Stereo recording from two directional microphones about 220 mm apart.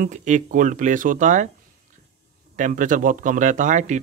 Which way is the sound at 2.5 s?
35° right (ahead or behind).